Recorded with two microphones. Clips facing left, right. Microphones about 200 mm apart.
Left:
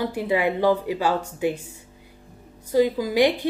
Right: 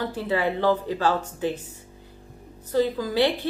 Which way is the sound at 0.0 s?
15° left (ahead or behind).